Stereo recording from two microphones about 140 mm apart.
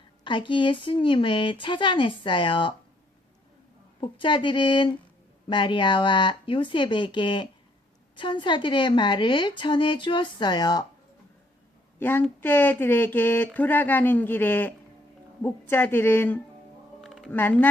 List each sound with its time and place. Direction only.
0.3 s a woman's voice: 35° left (ahead or behind)
4.0 s a woman's voice: 35° left (ahead or behind)
11.9 s a woman's voice: 15° left (ahead or behind)
17.0 s typing: centre (ahead or behind)
17.3 s speech: 15° left (ahead or behind)